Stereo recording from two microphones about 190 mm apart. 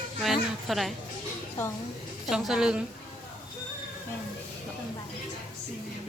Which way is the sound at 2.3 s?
Centre (ahead or behind).